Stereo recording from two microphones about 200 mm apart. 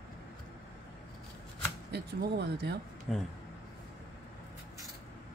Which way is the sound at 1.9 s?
55° right (ahead or behind).